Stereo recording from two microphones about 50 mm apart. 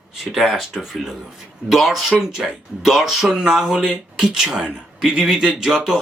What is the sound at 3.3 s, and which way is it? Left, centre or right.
Speech, centre.